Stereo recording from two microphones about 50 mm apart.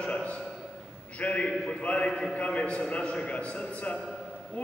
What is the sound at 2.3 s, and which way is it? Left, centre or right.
A man's voice, left.